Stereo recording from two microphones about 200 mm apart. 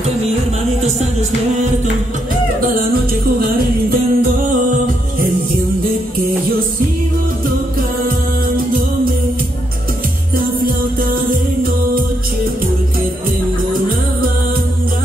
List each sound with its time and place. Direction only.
2.6 s music: 50° right (ahead or behind)
10.3 s music: 45° right (ahead or behind)